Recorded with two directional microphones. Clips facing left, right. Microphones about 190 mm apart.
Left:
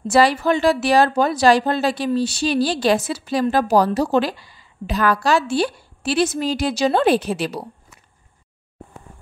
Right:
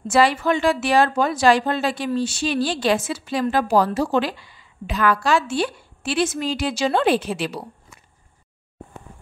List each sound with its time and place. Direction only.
0.1 s a woman's voice: 35° left (ahead or behind)